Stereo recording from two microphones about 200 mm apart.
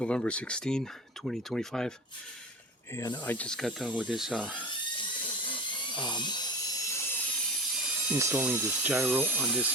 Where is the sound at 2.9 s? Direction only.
20° left (ahead or behind).